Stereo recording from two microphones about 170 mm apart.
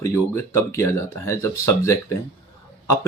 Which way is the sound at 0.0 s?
15° left (ahead or behind).